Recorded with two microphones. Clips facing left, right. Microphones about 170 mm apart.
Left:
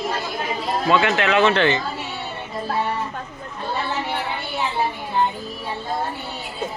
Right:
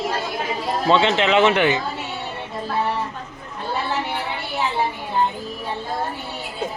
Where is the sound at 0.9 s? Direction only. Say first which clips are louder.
Right 2 dB; 25° right (ahead or behind).